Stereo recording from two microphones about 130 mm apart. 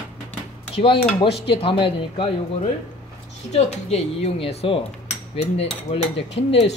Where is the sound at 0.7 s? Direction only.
45° left (ahead or behind).